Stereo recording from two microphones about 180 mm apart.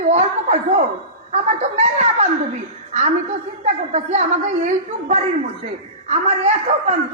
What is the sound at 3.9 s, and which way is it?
A woman's voice, 40° right (ahead or behind).